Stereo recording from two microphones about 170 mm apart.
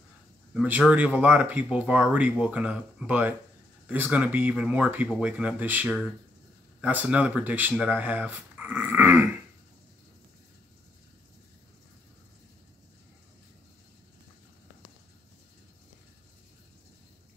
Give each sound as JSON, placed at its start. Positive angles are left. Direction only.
{"t": 0.6, "sound": "speech", "side_deg": -5}